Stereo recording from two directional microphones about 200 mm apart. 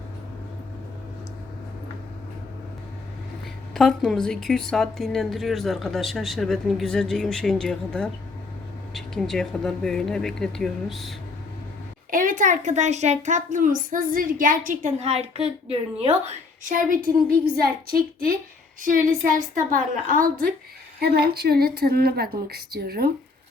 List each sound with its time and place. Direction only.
3.8 s a woman's voice: centre (ahead or behind)
12.1 s a child's voice: 40° right (ahead or behind)